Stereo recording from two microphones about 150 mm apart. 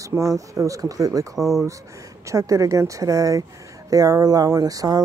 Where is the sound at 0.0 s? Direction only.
20° right (ahead or behind).